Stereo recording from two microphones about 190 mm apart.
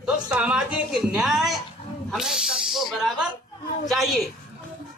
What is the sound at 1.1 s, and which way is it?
A woman's voice, centre (ahead or behind).